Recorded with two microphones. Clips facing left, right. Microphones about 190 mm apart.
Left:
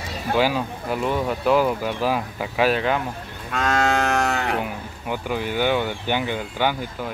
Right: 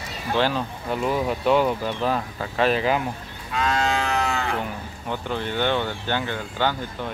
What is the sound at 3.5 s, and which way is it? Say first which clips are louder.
Livestock: left 2 dB; 50° left (ahead or behind).